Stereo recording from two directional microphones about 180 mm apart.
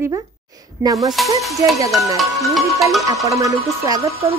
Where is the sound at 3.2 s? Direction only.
20° right (ahead or behind).